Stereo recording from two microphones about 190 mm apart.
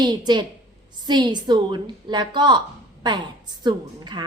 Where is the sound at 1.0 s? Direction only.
25° right (ahead or behind).